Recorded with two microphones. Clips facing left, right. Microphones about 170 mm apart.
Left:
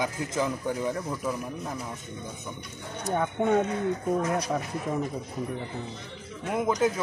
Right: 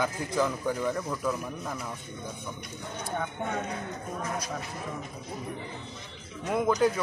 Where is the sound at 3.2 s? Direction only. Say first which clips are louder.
Left 10 dB; 65° left (ahead or behind).